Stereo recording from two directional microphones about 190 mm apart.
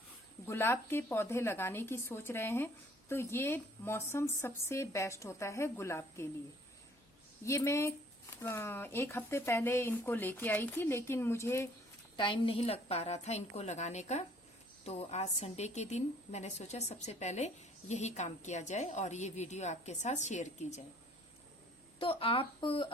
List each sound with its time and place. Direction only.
0.4 s speech: 10° left (ahead or behind)
7.4 s speech: 15° left (ahead or behind)
12.1 s a woman's voice: 25° left (ahead or behind)
21.9 s a woman's voice: 30° left (ahead or behind)